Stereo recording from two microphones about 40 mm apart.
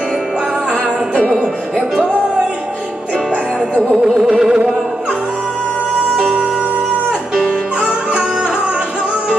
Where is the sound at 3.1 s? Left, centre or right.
Right.